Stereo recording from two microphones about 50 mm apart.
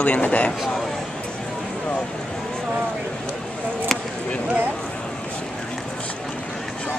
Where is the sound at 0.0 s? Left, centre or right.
Left.